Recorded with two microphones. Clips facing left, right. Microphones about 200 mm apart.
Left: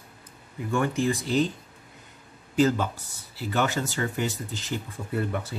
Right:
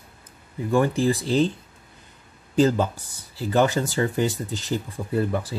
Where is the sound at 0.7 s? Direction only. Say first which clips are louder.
Right 5 dB; 35° right (ahead or behind).